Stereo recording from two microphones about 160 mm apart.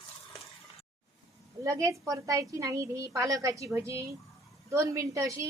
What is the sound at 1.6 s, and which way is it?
A woman's voice, 20° right (ahead or behind).